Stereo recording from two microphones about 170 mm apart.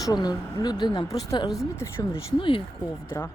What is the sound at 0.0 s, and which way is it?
Speech, 25° left (ahead or behind).